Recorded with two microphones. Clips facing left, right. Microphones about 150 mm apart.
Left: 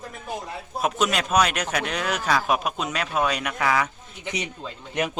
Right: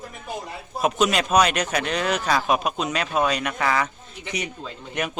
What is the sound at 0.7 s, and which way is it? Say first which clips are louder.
Speech: right 3 dB; centre (ahead or behind).